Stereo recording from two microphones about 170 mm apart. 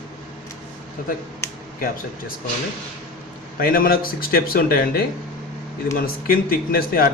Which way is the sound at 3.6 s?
60° left (ahead or behind).